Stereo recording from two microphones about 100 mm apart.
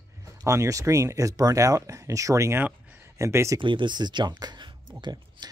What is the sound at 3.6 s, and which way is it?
Speech, 55° right (ahead or behind).